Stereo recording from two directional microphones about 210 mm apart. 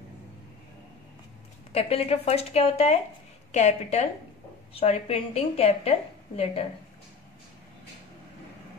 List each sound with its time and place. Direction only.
1.7 s a woman's voice: 30° left (ahead or behind)